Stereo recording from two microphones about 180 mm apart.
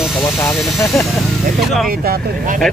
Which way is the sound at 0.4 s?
5° left (ahead or behind).